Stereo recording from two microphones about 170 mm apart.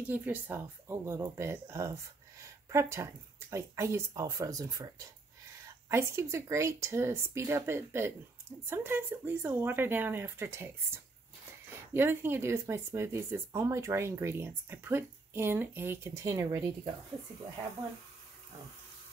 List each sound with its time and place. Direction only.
0.0 s speech: 10° right (ahead or behind)
11.9 s speech: 15° right (ahead or behind)